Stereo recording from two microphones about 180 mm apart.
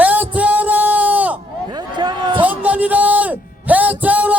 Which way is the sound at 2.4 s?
10° right (ahead or behind).